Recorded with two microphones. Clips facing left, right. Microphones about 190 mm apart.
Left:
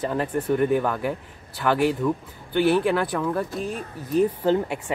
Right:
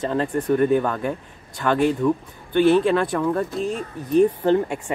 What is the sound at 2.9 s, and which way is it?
Speech, 5° left (ahead or behind).